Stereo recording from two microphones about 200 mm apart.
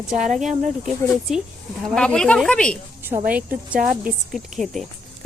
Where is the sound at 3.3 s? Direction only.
5° right (ahead or behind).